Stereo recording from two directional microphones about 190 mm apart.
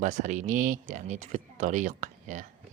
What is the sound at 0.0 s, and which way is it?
Speech, 40° right (ahead or behind).